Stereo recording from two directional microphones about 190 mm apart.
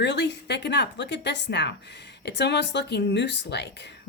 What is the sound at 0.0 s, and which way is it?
Speech, 60° left (ahead or behind).